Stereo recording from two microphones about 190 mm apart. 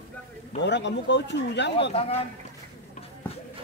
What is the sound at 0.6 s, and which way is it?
Speech, 70° left (ahead or behind).